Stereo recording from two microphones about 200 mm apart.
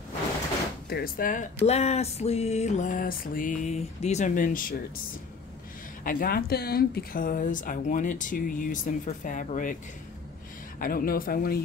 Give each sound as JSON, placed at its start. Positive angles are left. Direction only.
{"t": 0.8, "sound": "speech", "side_deg": 50}
{"t": 1.7, "sound": "a sound", "side_deg": 30}
{"t": 6.0, "sound": "speech", "side_deg": 45}
{"t": 10.8, "sound": "speech", "side_deg": 45}